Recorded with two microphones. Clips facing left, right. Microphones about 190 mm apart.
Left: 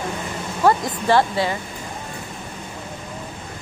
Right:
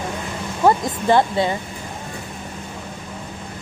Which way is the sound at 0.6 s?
20° right (ahead or behind).